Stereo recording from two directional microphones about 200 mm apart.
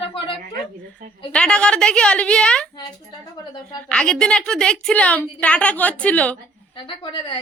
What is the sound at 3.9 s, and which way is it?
A woman's voice, 5° left (ahead or behind).